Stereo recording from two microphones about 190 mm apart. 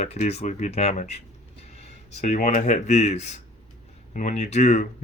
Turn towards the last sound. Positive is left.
turn(degrees=40)  # may be behind; listen again after turning